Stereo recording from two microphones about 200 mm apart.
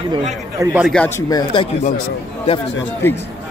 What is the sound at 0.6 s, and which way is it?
Speech, 5° right (ahead or behind).